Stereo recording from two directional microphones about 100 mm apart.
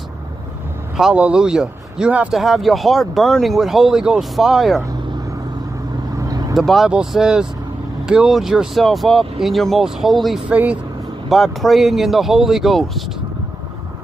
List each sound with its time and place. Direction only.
0.9 s speech: 10° right (ahead or behind)
6.1 s vehicle: 35° right (ahead or behind)
6.5 s speech: centre (ahead or behind)
10.5 s speech: 15° right (ahead or behind)
11.2 s speech: centre (ahead or behind)